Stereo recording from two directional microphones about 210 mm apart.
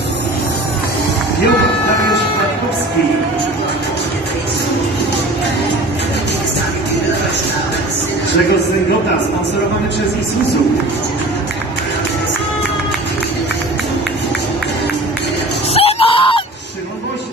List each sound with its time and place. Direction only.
15.7 s screaming: 30° left (ahead or behind)